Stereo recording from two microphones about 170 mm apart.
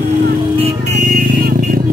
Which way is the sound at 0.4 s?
35° right (ahead or behind).